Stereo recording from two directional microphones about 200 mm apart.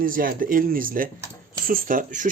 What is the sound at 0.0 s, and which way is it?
Speech, 45° right (ahead or behind).